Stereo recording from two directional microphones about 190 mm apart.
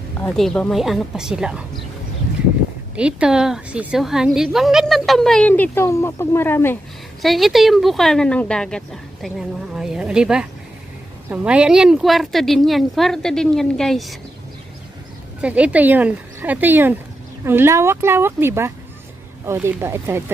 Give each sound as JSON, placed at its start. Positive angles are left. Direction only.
{"t": 0.4, "sound": "a woman's voice", "side_deg": 5}
{"t": 3.0, "sound": "a woman's voice", "side_deg": -5}
{"t": 7.2, "sound": "a woman's voice", "side_deg": 0}
{"t": 15.4, "sound": "a woman's voice", "side_deg": -5}